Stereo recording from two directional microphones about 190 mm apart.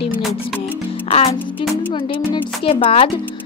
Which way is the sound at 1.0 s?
30° left (ahead or behind).